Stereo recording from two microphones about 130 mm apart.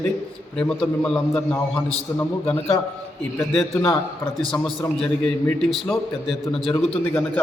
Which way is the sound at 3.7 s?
25° left (ahead or behind).